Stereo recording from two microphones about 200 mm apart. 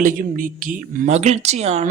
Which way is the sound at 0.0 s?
45° right (ahead or behind).